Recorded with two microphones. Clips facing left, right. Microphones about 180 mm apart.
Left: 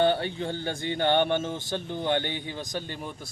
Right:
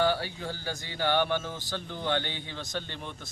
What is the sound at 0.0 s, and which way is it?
A man's voice, 25° left (ahead or behind).